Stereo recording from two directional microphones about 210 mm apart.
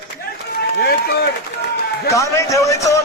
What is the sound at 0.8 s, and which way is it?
Speech, 50° left (ahead or behind).